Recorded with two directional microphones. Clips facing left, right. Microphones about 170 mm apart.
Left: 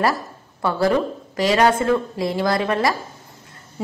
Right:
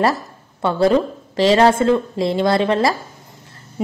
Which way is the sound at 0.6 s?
25° right (ahead or behind).